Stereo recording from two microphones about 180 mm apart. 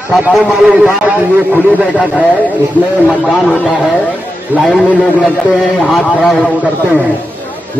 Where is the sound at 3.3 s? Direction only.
Centre (ahead or behind).